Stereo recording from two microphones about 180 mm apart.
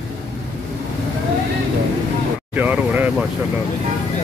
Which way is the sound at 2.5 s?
10° right (ahead or behind).